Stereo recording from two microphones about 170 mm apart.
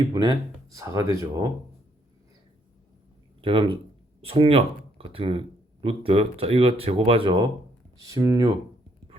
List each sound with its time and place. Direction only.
0.1 s speech: 25° right (ahead or behind)
3.4 s speech: 30° right (ahead or behind)
8.1 s speech: 20° right (ahead or behind)